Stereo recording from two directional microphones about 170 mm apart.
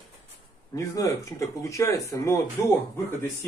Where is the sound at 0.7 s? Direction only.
20° left (ahead or behind).